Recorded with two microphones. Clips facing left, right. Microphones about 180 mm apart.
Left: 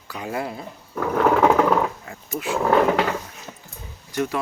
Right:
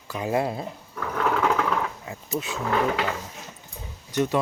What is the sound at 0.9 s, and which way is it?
Sewing machine, 55° left (ahead or behind).